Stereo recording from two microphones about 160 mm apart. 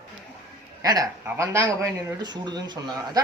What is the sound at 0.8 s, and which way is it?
A man's voice, 20° right (ahead or behind).